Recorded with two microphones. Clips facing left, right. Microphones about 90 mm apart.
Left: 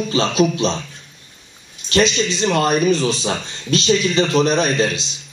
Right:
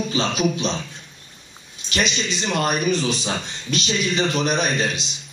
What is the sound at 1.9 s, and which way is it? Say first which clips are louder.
A man's voice: left 7 dB; 30° left (ahead or behind).